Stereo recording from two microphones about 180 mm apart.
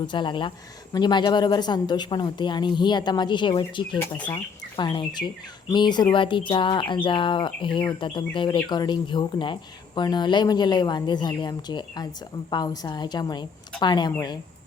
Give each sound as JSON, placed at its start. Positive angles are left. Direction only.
{"t": 0.1, "sound": "speech", "side_deg": 25}